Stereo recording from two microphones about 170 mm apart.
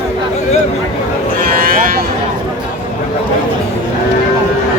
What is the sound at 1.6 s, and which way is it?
Vehicle, 60° right (ahead or behind).